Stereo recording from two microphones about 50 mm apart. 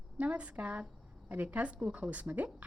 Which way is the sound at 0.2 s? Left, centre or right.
Right.